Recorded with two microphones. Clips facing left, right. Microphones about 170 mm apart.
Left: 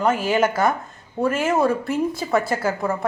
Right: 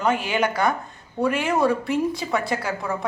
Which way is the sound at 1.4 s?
Centre (ahead or behind).